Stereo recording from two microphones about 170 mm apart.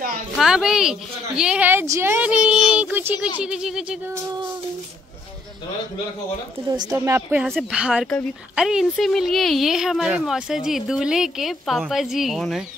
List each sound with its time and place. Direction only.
0.4 s a woman's voice: 5° right (ahead or behind)
6.7 s a woman's voice: 20° right (ahead or behind)
7.4 s speech: centre (ahead or behind)